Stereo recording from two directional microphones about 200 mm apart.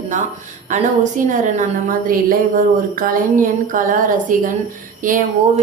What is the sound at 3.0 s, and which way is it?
A woman's voice, 40° right (ahead or behind).